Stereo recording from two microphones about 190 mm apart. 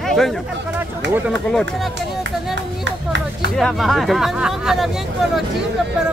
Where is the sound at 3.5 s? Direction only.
Centre (ahead or behind).